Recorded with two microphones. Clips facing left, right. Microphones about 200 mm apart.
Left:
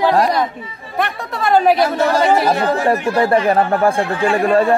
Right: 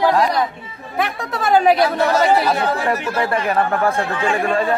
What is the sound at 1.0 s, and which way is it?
Speech, centre (ahead or behind).